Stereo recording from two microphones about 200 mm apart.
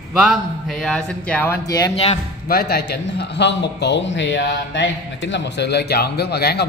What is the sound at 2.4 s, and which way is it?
A man's voice, 50° left (ahead or behind).